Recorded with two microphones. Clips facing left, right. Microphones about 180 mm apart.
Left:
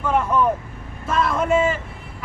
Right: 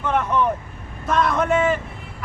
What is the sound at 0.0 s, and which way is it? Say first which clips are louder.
Vehicle: left 1 dB; 5° left (ahead or behind).